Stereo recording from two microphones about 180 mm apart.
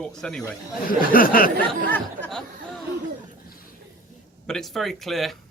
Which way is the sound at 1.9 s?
5° left (ahead or behind).